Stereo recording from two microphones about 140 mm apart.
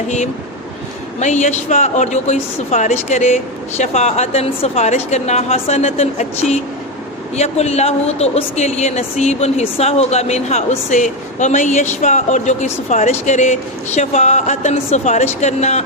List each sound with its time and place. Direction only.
1.2 s speech: 55° left (ahead or behind)